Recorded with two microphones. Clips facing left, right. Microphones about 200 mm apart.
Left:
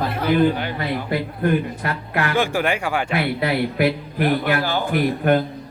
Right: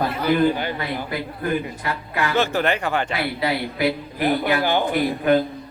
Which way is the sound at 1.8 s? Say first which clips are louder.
Left 1 dB; 55° left (ahead or behind).